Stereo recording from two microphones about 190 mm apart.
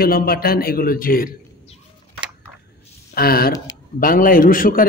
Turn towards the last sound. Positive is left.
turn(degrees=45)  # may be behind; listen again after turning